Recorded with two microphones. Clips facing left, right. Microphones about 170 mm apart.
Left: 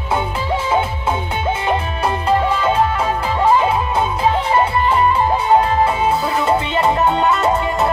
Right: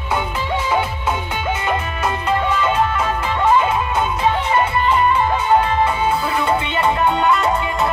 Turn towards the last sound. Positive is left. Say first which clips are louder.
# left 2 dB
turn(degrees=30)  # may be behind; listen again after turning